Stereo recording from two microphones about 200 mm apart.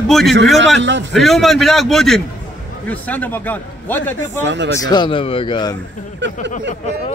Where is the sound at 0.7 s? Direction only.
65° right (ahead or behind).